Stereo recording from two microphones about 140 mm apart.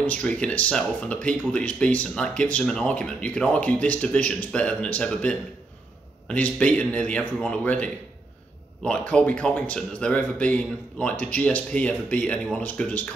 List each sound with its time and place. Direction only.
0.0 s speech: 10° left (ahead or behind)